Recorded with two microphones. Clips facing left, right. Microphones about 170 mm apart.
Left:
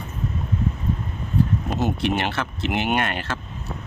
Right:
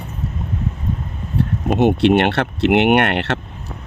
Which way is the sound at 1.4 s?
70° right (ahead or behind).